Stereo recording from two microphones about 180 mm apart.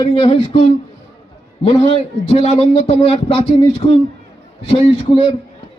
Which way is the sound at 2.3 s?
35° left (ahead or behind).